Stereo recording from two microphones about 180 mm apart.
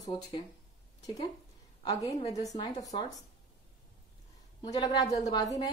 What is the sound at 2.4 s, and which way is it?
Speech, 20° left (ahead or behind).